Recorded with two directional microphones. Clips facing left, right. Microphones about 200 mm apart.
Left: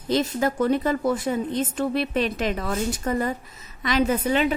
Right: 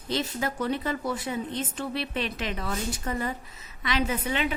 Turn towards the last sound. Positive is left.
turn(degrees=40)  # may be behind; listen again after turning